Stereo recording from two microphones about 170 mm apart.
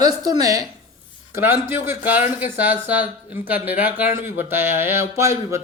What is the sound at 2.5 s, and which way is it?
Speech, 10° right (ahead or behind).